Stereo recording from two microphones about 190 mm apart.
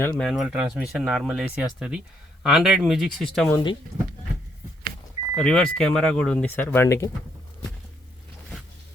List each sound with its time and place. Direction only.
0.0 s speech: 5° left (ahead or behind)
3.5 s speech: 25° left (ahead or behind)
5.3 s speech: 5° left (ahead or behind)